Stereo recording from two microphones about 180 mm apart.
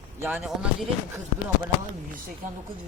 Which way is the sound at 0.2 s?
10° right (ahead or behind).